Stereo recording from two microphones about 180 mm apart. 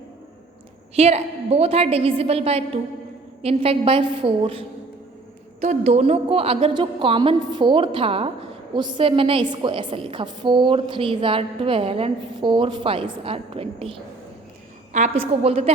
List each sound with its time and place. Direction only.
0.9 s a woman's voice: 35° right (ahead or behind)
15.2 s a woman's voice: 35° right (ahead or behind)